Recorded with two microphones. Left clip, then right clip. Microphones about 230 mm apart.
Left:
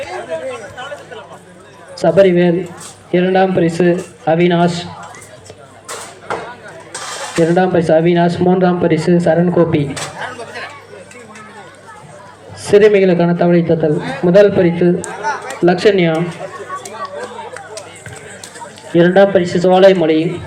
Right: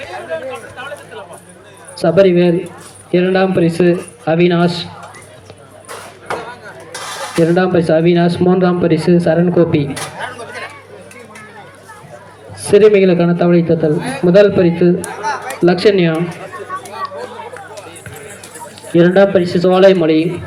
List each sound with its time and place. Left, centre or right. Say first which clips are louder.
2.0 s speech: even; centre
7.4 s speech: even; centre
12.6 s speech: even; centre
15.0 s a sound: even; right
15.6 s speech: even; centre
17.2 s chatter: even; left
18.9 s speech: even; centre